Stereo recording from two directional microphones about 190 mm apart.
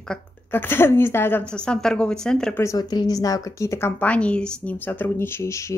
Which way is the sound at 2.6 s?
20° left (ahead or behind).